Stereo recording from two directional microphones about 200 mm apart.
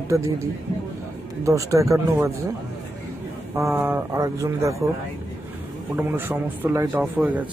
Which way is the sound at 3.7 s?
10° right (ahead or behind).